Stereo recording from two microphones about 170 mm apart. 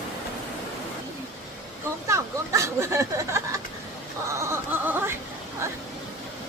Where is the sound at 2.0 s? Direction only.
15° right (ahead or behind).